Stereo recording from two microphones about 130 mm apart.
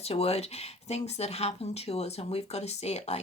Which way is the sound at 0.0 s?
50° left (ahead or behind).